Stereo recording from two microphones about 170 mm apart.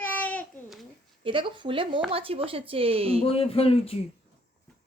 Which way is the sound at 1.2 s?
30° right (ahead or behind).